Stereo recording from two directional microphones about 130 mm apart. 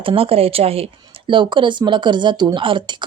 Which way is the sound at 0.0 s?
45° right (ahead or behind).